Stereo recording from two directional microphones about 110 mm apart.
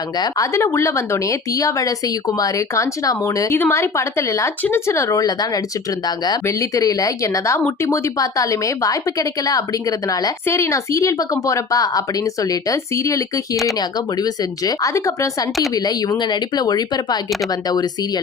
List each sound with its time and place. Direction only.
0.2 s speech: 30° left (ahead or behind)